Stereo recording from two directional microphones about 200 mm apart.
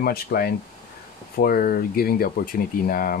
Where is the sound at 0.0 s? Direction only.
50° left (ahead or behind).